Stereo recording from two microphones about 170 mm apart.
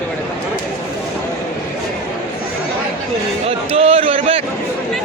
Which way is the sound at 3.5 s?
35° right (ahead or behind).